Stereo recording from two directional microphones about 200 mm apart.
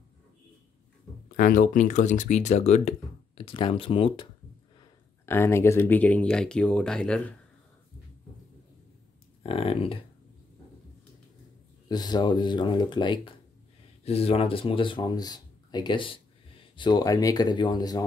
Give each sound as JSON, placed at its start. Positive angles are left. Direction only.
{"t": 1.3, "sound": "speech", "side_deg": 45}
{"t": 4.7, "sound": "speech", "side_deg": 15}
{"t": 9.4, "sound": "speech", "side_deg": 30}
{"t": 11.9, "sound": "speech", "side_deg": 20}